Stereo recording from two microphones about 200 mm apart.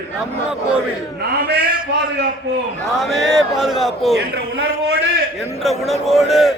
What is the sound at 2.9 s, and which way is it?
A man's voice, centre (ahead or behind).